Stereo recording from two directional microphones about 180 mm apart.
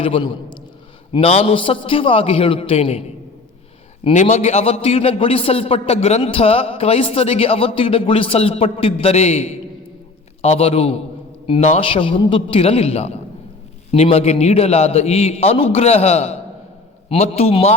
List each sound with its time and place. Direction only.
0.0 s a man's voice: 30° left (ahead or behind)
4.0 s a man's voice: 40° left (ahead or behind)